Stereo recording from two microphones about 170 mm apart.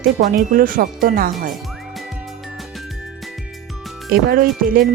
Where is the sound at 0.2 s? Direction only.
50° right (ahead or behind).